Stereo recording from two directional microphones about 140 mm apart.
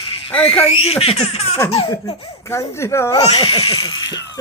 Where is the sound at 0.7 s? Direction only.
45° left (ahead or behind).